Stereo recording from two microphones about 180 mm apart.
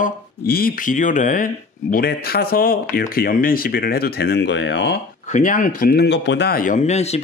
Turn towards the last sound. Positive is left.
turn(degrees=35)  # may be behind; listen again after turning